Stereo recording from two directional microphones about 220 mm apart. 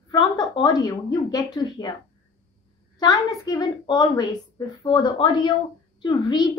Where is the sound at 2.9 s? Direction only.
15° left (ahead or behind).